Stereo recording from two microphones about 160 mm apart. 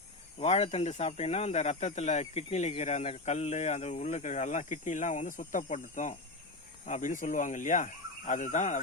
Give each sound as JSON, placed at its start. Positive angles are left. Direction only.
{"t": 0.3, "sound": "speech", "side_deg": 40}